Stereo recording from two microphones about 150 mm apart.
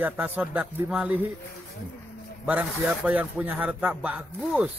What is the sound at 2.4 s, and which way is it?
Speech, 10° right (ahead or behind).